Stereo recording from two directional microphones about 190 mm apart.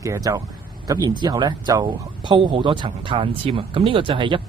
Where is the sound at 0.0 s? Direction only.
15° right (ahead or behind).